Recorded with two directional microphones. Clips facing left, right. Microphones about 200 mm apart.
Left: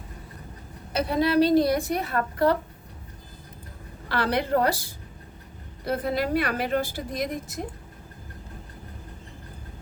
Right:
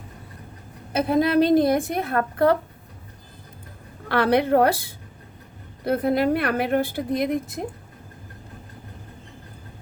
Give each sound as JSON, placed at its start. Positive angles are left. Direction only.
{"t": 0.9, "sound": "a woman's voice", "side_deg": -50}
{"t": 4.1, "sound": "a woman's voice", "side_deg": -55}